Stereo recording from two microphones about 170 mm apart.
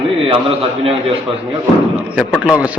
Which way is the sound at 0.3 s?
35° right (ahead or behind).